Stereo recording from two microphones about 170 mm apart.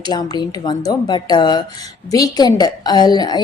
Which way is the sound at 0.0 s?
25° left (ahead or behind).